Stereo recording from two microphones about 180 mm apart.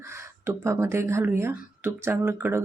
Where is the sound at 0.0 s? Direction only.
15° right (ahead or behind).